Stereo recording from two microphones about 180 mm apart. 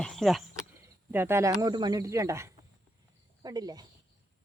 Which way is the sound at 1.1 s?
10° right (ahead or behind).